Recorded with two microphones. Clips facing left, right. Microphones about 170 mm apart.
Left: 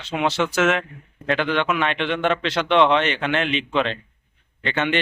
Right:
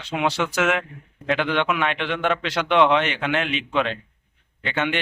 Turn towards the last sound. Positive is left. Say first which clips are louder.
# left 2 dB
turn(degrees=-5)  # may be behind; listen again after turning